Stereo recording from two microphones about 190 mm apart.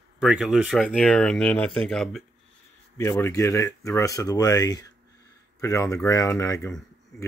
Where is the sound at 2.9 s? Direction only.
15° left (ahead or behind).